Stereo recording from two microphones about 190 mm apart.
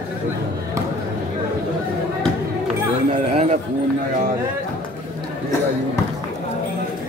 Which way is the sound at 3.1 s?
35° right (ahead or behind).